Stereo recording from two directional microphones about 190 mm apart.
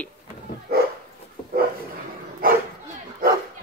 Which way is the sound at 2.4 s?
50° right (ahead or behind).